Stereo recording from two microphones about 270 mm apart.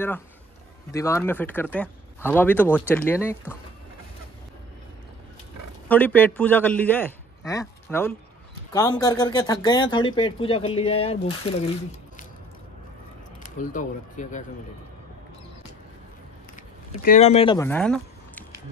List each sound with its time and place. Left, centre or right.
0.9 s speech: centre
5.9 s a man's voice: centre
13.4 s speech: left
17.0 s speech: left; by 18.4 s centre